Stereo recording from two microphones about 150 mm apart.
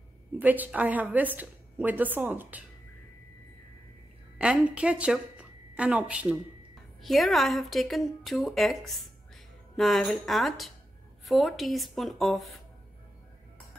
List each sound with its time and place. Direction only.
0.4 s a woman's voice: 10° right (ahead or behind)
4.4 s a woman's voice: 5° right (ahead or behind)